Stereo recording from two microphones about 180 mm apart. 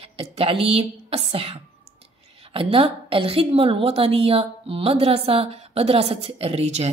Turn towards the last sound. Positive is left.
turn(degrees=-35)  # may be behind; listen again after turning